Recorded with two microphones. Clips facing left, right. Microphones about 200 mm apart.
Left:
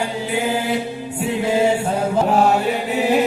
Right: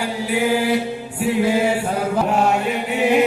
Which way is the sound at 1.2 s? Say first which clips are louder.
Even; 25° left (ahead or behind).